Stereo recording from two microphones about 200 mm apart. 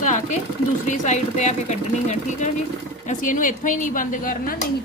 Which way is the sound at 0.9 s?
35° left (ahead or behind).